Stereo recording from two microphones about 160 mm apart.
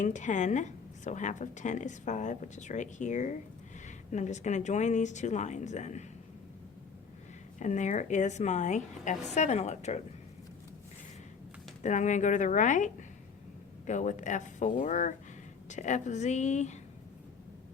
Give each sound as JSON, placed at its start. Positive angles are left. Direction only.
{"t": 0.0, "sound": "a woman's voice", "side_deg": 50}
{"t": 7.6, "sound": "a woman's voice", "side_deg": 50}
{"t": 11.8, "sound": "a woman's voice", "side_deg": 50}